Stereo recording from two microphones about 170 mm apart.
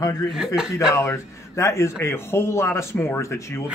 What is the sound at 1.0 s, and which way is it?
Speech, 15° left (ahead or behind).